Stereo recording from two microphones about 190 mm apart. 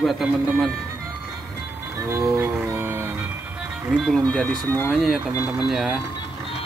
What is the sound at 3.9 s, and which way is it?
Speech, centre (ahead or behind).